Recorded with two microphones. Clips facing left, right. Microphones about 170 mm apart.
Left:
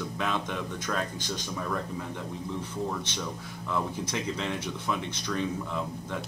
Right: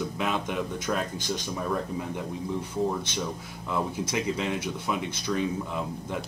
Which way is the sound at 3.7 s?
10° right (ahead or behind).